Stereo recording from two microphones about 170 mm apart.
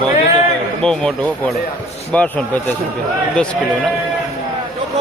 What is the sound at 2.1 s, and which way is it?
Speech, 10° left (ahead or behind).